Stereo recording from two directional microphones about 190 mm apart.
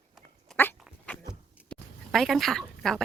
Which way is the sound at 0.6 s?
10° left (ahead or behind).